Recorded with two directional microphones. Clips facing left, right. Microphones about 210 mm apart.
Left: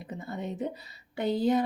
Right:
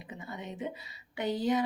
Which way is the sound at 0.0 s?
40° left (ahead or behind).